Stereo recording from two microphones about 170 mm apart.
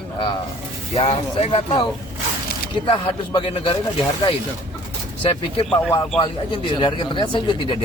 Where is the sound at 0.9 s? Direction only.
35° left (ahead or behind).